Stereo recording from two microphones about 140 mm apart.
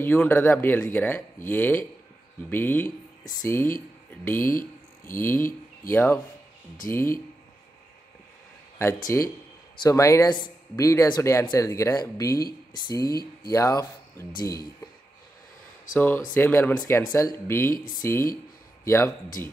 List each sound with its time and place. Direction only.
0.0 s speech: 15° left (ahead or behind)
8.7 s speech: 20° left (ahead or behind)
15.9 s speech: 15° left (ahead or behind)